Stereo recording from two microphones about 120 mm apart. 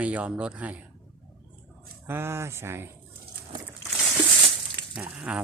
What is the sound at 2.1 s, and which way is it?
Speech, 20° right (ahead or behind).